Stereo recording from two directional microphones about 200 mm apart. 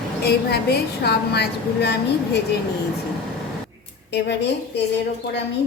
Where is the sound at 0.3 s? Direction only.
55° left (ahead or behind).